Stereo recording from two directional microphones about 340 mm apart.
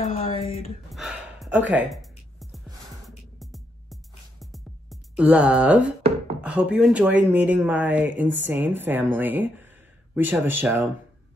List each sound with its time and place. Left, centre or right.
0.0 s a sound: centre
0.8 s gasp: centre
3.3 s music: centre
6.4 s speech: centre